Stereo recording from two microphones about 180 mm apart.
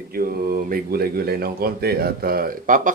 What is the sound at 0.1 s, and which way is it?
Speech, 55° right (ahead or behind).